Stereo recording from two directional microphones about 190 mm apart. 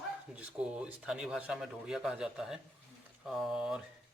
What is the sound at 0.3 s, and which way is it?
Speech, 5° right (ahead or behind).